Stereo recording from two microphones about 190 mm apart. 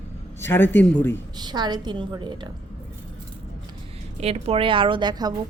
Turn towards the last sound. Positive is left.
turn(degrees=-20)  # may be behind; listen again after turning